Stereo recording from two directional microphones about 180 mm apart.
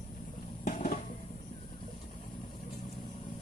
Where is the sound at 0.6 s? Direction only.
50° left (ahead or behind).